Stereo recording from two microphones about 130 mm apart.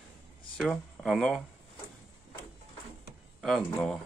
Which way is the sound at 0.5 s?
Centre (ahead or behind).